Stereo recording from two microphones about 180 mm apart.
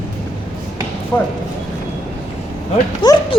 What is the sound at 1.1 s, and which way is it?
Speech, 15° left (ahead or behind).